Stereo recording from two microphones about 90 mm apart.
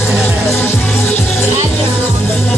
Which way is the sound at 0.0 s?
25° left (ahead or behind).